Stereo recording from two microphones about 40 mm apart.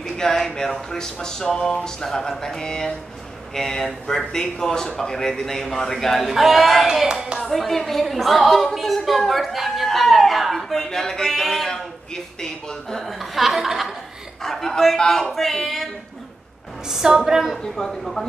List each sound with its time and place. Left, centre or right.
0.2 s speech: centre
6.3 s speech: centre
7.1 s speech: right
7.3 s speech: centre
8.7 s a sound: centre
13.0 s chuckle: centre
14.4 s speech: centre
16.8 s a woman's voice: centre